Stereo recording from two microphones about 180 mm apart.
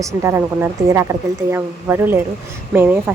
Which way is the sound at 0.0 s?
15° right (ahead or behind).